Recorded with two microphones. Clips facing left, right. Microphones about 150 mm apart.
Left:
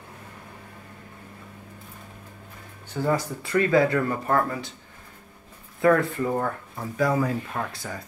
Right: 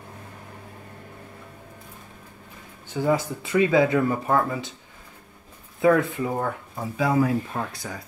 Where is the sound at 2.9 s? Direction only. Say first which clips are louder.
Right 2 dB; 20° right (ahead or behind).